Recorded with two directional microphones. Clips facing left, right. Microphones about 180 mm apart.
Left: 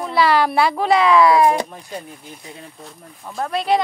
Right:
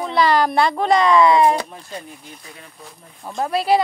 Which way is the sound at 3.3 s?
5° right (ahead or behind).